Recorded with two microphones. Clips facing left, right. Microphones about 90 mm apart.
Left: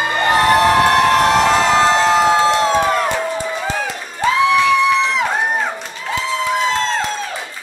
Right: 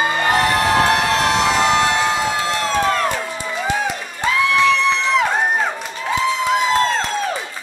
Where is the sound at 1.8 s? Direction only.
30° left (ahead or behind).